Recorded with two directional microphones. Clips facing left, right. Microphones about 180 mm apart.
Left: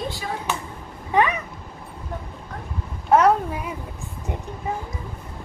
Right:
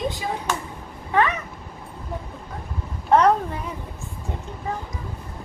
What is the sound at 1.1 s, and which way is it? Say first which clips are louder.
Speech: left 1 dB; 20° left (ahead or behind).